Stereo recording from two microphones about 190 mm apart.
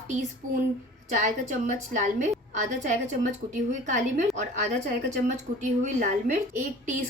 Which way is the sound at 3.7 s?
40° right (ahead or behind).